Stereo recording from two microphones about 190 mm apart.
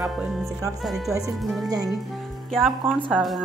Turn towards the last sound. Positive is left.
turn(degrees=-5)  # may be behind; listen again after turning